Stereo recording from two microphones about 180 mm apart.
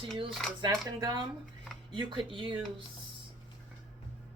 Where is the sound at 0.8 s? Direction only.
20° right (ahead or behind).